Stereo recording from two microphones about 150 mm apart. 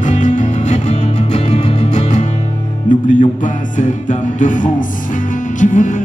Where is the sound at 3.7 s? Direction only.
55° left (ahead or behind).